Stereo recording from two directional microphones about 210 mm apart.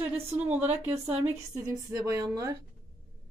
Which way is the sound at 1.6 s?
15° right (ahead or behind).